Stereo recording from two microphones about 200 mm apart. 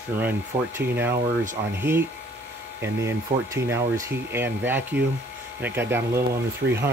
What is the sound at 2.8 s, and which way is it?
Speech, 15° right (ahead or behind).